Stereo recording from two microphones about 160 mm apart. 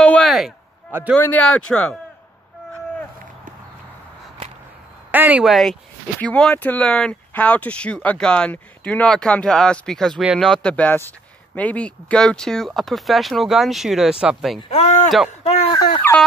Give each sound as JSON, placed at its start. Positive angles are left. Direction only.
{"t": 0.0, "sound": "a sound", "side_deg": 5}
{"t": 1.1, "sound": "speech", "side_deg": 10}
{"t": 5.1, "sound": "speech", "side_deg": -10}
{"t": 14.6, "sound": "speech", "side_deg": 40}
{"t": 15.7, "sound": "speech", "side_deg": 25}
{"t": 16.0, "sound": "speech", "side_deg": 10}